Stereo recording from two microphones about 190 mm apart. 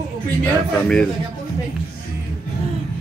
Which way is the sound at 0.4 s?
5° left (ahead or behind).